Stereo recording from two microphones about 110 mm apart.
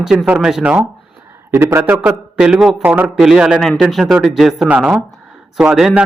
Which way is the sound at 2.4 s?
10° right (ahead or behind).